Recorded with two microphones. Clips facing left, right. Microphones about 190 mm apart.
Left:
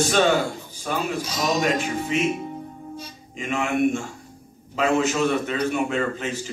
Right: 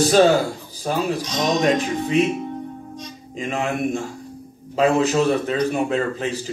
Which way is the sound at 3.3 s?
35° right (ahead or behind).